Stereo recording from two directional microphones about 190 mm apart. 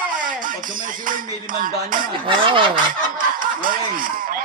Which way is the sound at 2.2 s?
25° right (ahead or behind).